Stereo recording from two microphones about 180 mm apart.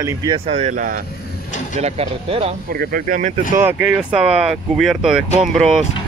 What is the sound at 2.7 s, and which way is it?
Speech, 55° right (ahead or behind).